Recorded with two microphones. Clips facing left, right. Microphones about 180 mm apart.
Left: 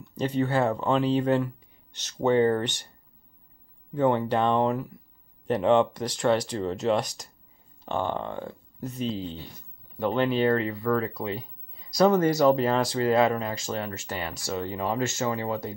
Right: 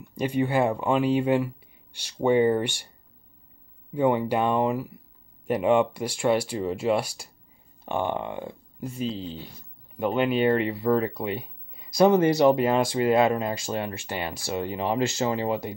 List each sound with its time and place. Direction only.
0.1 s speech: 10° right (ahead or behind)
3.9 s speech: 10° right (ahead or behind)
11.3 s a sound: 20° right (ahead or behind)
12.4 s speech: 15° right (ahead or behind)